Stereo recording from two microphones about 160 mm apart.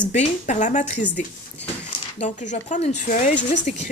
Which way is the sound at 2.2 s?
50° left (ahead or behind).